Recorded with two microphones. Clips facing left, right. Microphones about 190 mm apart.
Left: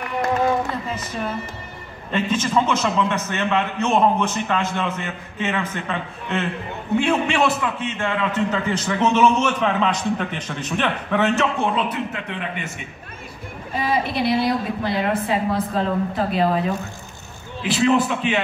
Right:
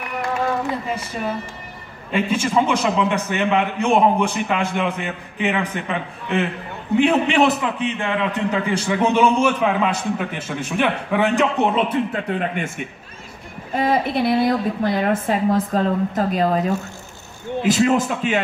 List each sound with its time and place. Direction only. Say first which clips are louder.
2.0 s a man's voice: right 1 dB; 10° right (ahead or behind)
12.1 s a man's voice: right 6 dB; 40° right (ahead or behind)
13.7 s a woman's voice: right 3 dB; 50° right (ahead or behind)